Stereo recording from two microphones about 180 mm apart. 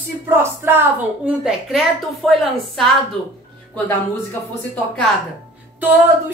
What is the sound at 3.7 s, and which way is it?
Speech, 15° left (ahead or behind).